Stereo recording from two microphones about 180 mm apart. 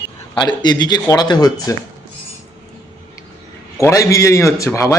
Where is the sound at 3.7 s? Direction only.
15° left (ahead or behind).